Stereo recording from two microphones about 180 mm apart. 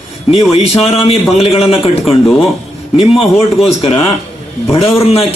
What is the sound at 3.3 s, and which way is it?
Speech, 35° left (ahead or behind).